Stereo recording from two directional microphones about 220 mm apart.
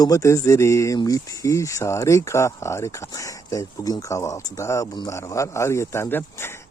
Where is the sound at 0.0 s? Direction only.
15° left (ahead or behind).